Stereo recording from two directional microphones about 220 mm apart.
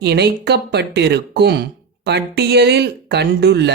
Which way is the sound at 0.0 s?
50° right (ahead or behind).